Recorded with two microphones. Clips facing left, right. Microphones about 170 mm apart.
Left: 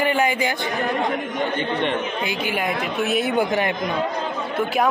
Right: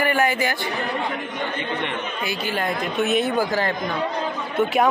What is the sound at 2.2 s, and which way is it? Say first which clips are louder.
A woman's voice: left 1 dB; 15° left (ahead or behind).